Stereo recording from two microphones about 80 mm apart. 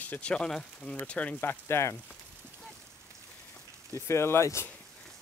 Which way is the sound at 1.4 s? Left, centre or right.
Left.